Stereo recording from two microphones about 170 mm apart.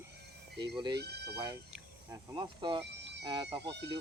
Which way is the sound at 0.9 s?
75° right (ahead or behind).